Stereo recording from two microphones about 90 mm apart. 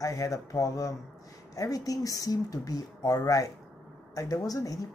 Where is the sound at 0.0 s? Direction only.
40° left (ahead or behind).